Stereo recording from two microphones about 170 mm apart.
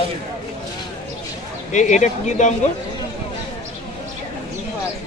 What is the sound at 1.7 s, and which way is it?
Speech, 45° left (ahead or behind).